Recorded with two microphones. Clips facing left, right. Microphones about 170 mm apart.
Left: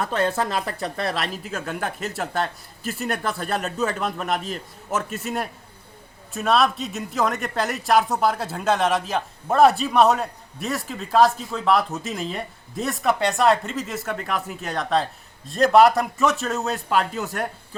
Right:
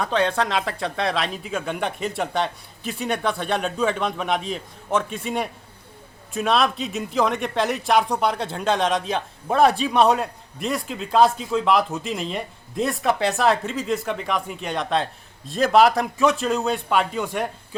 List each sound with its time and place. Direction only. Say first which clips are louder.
0.0 s speech: right 1 dB; 5° left (ahead or behind)
0.3 s speech: right 1 dB; 90° right
1.0 s speech: right 3 dB; centre (ahead or behind)